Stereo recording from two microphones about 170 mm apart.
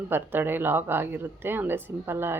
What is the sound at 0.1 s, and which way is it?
Speech, 10° right (ahead or behind).